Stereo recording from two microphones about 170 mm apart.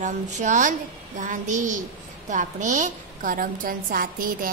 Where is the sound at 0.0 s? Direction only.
45° right (ahead or behind).